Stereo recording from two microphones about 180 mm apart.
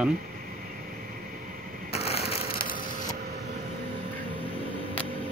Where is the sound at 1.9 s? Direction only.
35° left (ahead or behind).